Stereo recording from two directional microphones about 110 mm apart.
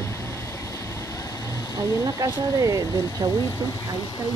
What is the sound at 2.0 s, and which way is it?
Speech, 30° right (ahead or behind).